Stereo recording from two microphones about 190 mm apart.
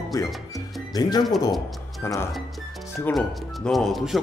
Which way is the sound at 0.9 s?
20° left (ahead or behind).